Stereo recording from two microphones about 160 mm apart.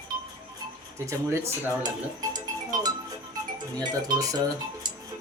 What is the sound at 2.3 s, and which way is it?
Music, 25° right (ahead or behind).